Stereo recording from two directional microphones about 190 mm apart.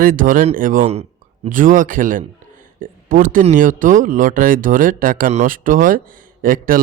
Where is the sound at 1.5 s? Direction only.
45° right (ahead or behind).